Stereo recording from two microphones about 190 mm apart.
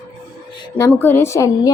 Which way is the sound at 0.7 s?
15° left (ahead or behind).